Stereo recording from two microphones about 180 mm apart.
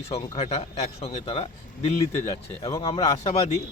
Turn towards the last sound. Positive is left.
turn(degrees=35)  # may be behind; listen again after turning